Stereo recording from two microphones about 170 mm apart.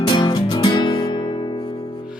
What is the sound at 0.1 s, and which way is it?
Music, 30° left (ahead or behind).